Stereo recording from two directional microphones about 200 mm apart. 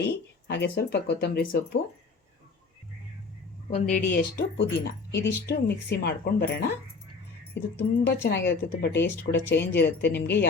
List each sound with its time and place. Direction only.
0.0 s speech: 55° left (ahead or behind)
3.8 s speech: 35° left (ahead or behind)
7.8 s speech: 60° left (ahead or behind)